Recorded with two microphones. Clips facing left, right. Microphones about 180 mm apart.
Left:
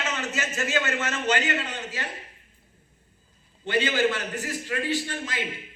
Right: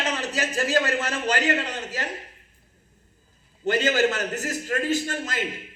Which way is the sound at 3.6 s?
40° right (ahead or behind).